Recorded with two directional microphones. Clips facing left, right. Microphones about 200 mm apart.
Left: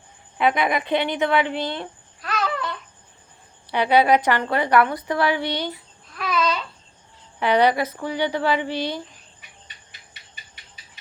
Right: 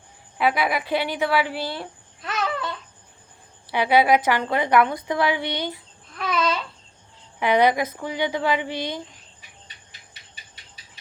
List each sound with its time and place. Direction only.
0.3 s speech: 5° right (ahead or behind)
2.2 s babbling: 25° right (ahead or behind)
3.7 s a woman's voice: 10° right (ahead or behind)
6.1 s babbling: 25° right (ahead or behind)
7.3 s a woman's voice: 15° right (ahead or behind)